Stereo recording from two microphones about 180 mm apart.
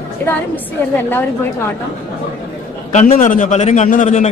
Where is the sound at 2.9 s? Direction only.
45° left (ahead or behind).